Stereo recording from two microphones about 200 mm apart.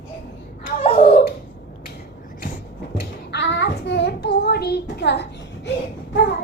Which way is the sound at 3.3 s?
60° left (ahead or behind).